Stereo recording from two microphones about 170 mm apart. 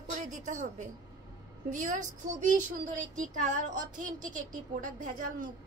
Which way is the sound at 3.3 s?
50° right (ahead or behind).